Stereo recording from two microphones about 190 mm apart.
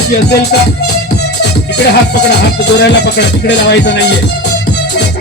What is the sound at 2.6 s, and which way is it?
Speech, 65° left (ahead or behind).